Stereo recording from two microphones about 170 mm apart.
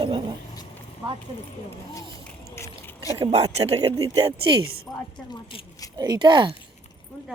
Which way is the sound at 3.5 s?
40° right (ahead or behind).